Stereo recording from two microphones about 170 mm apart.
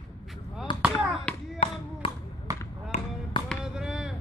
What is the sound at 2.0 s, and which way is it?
Basketball bounce, 30° left (ahead or behind).